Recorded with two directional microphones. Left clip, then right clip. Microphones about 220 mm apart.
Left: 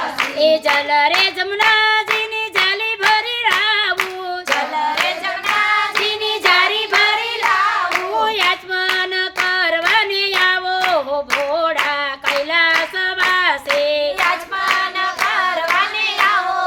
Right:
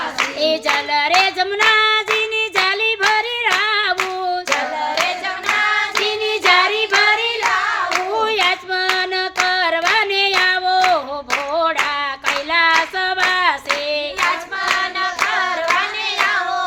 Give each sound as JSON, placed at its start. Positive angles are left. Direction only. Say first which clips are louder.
{"t": 0.3, "sound": "child singing", "louder": "left 5 dB", "side_deg": -15}
{"t": 6.4, "sound": "music", "louder": "even", "side_deg": -20}
{"t": 8.1, "sound": "hands", "louder": "left 1 dB", "side_deg": -15}
{"t": 11.5, "sound": "singing", "louder": "right 2 dB", "side_deg": -15}
{"t": 12.5, "sound": "hands", "louder": "right 2 dB", "side_deg": -15}